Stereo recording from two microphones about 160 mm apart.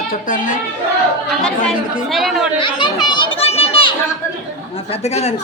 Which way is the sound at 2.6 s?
30° left (ahead or behind).